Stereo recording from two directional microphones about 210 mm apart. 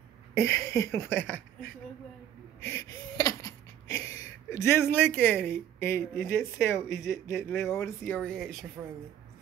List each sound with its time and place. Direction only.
0.3 s speech: 10° left (ahead or behind)
2.6 s a sound: 15° left (ahead or behind)
5.8 s speech: 10° left (ahead or behind)